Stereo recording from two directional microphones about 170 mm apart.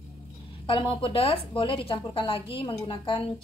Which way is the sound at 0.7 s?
30° left (ahead or behind).